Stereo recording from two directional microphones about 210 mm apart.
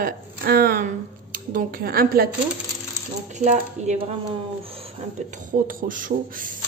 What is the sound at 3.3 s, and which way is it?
Speech, 35° right (ahead or behind).